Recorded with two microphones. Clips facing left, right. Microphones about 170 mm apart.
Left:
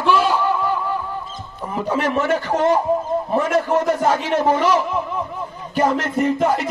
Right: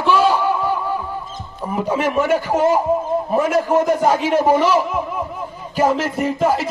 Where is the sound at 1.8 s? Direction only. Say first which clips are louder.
Right 1 dB; 10° right (ahead or behind).